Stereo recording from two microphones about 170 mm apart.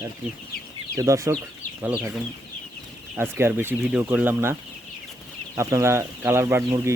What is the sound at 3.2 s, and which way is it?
Speech, 15° right (ahead or behind).